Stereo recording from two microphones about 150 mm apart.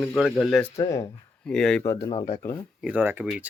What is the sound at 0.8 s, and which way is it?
Speech, 25° left (ahead or behind).